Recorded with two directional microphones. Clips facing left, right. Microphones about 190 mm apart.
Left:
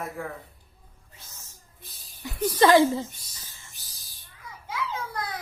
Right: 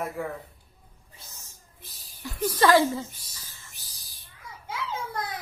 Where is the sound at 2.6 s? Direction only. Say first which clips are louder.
Left 2 dB; 20° left (ahead or behind).